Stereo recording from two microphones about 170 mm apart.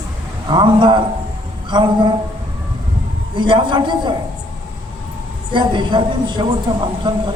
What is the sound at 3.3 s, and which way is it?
Speech, 25° right (ahead or behind).